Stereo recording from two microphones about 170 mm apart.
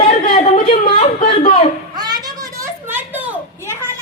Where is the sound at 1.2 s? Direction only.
35° left (ahead or behind).